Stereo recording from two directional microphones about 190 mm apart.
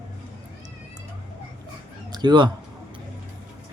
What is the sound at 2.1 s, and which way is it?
Speech, 25° right (ahead or behind).